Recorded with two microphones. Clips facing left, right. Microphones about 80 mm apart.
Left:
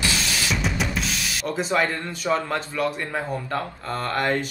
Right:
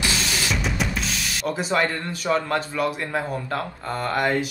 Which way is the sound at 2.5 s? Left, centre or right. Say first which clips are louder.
Right 1 dB; centre.